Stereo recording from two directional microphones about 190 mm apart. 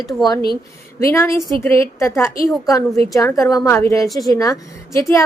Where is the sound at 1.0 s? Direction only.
15° left (ahead or behind).